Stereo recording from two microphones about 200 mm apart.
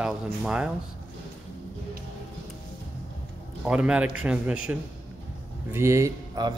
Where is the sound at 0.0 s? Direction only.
5° right (ahead or behind).